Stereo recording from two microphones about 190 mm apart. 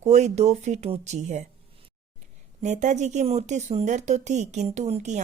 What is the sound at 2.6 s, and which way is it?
Speech, 40° right (ahead or behind).